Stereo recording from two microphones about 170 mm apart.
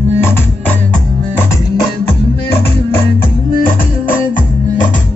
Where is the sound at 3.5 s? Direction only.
55° left (ahead or behind).